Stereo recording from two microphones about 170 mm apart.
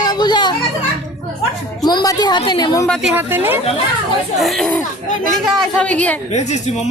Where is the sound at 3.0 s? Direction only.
10° right (ahead or behind).